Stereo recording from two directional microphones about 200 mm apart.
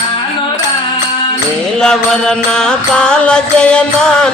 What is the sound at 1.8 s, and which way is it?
Music, 5° left (ahead or behind).